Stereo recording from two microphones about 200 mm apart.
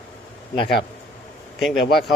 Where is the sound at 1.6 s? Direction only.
Centre (ahead or behind).